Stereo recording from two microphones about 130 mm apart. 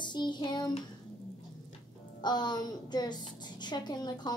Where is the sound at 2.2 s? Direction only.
35° left (ahead or behind).